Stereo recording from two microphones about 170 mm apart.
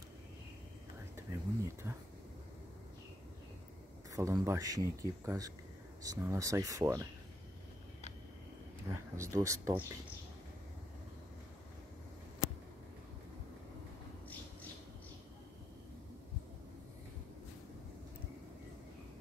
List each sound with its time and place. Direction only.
1.1 s speech: 15° right (ahead or behind)
4.1 s a man's voice: 20° right (ahead or behind)
8.8 s speech: 15° right (ahead or behind)